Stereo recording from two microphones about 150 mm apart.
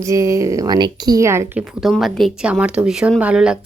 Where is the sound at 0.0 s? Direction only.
20° right (ahead or behind).